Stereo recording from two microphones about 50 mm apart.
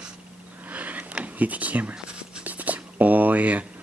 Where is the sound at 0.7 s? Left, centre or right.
Right.